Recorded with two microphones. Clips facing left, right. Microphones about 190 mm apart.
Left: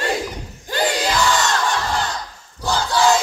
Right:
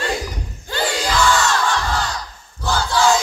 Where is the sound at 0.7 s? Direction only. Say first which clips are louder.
Left 2 dB; 15° left (ahead or behind).